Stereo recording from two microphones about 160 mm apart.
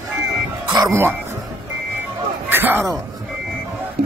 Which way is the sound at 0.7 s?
20° right (ahead or behind).